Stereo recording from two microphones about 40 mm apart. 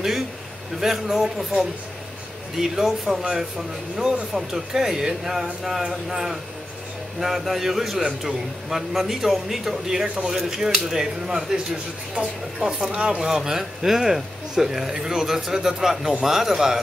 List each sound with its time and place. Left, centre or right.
0.7 s a man's voice: centre